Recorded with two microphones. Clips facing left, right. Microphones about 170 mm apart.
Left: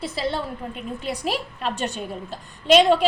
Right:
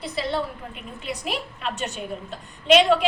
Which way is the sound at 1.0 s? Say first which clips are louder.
Left 2 dB; 35° left (ahead or behind).